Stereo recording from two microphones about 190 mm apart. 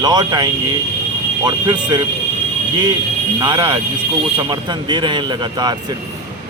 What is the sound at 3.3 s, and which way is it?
Speech, 25° right (ahead or behind).